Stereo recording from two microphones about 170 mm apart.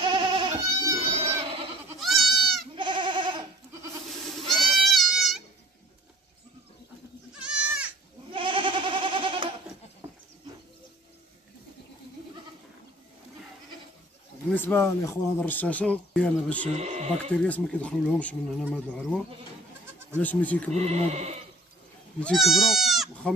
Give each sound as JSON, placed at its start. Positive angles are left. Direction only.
{"t": 0.0, "sound": "goat", "side_deg": -25}
{"t": 0.9, "sound": "vehicle", "side_deg": -35}
{"t": 2.0, "sound": "goat", "side_deg": 0}
{"t": 2.7, "sound": "goat", "side_deg": -30}
{"t": 4.5, "sound": "goat", "side_deg": 0}
{"t": 7.4, "sound": "goat", "side_deg": -5}
{"t": 8.3, "sound": "goat", "side_deg": -30}
{"t": 14.5, "sound": "speech", "side_deg": 10}
{"t": 16.7, "sound": "speech", "side_deg": -40}
{"t": 17.4, "sound": "speech", "side_deg": 5}
{"t": 20.7, "sound": "speech", "side_deg": -40}
{"t": 22.2, "sound": "speech", "side_deg": 0}